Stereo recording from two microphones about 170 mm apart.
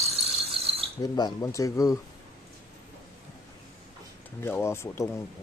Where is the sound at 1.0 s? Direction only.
20° left (ahead or behind).